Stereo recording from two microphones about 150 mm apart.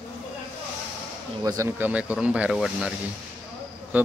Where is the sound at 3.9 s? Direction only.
10° right (ahead or behind).